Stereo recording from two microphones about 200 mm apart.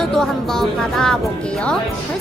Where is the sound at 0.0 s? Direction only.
Centre (ahead or behind).